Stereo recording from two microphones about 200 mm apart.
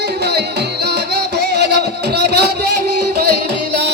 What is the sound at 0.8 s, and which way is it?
Music, 55° right (ahead or behind).